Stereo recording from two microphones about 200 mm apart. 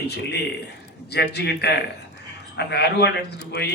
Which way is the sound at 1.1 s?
55° left (ahead or behind).